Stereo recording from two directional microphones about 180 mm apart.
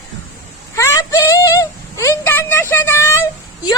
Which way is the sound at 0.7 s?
15° left (ahead or behind).